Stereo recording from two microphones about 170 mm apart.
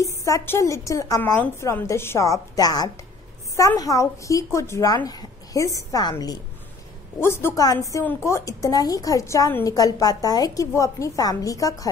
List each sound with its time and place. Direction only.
0.0 s a woman's voice: 20° left (ahead or behind)